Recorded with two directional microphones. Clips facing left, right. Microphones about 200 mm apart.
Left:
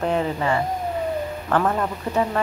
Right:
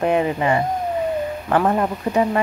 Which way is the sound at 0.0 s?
10° right (ahead or behind).